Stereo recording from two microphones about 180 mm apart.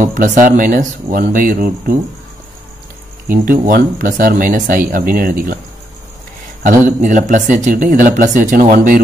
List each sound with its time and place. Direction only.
0.0 s speech: 45° right (ahead or behind)
3.3 s speech: 50° right (ahead or behind)
7.0 s speech: 45° right (ahead or behind)